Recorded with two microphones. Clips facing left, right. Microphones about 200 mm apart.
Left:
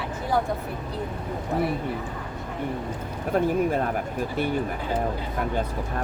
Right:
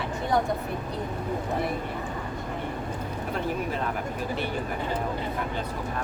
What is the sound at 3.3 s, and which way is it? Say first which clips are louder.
Speech: left 8 dB; 45° left (ahead or behind).